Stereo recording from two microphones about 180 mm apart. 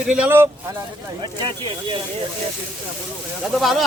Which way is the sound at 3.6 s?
Centre (ahead or behind).